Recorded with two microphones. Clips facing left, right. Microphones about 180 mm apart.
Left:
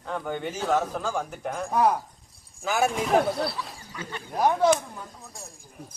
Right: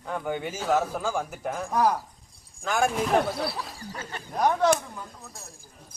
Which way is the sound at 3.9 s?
40° right (ahead or behind).